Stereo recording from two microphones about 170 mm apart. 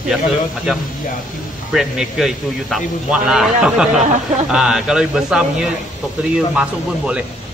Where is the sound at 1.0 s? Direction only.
50° left (ahead or behind).